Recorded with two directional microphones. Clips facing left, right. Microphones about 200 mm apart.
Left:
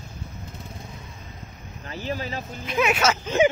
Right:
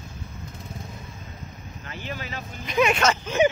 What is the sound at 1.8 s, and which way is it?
Vehicle, 35° left (ahead or behind).